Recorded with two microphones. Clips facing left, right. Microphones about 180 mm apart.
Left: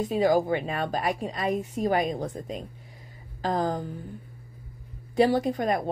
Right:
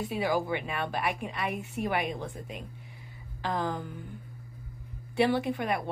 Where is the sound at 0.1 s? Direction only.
40° left (ahead or behind).